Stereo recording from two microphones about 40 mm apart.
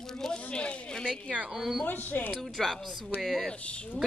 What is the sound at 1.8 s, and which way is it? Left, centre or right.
Speech, left.